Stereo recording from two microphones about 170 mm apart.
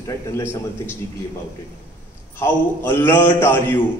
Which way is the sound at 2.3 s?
10° left (ahead or behind).